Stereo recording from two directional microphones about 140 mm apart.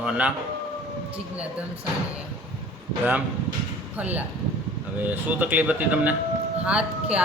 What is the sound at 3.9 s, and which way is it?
Speech, 10° right (ahead or behind).